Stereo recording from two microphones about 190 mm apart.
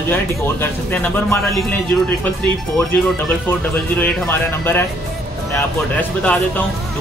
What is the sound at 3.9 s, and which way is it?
Speech, 10° left (ahead or behind).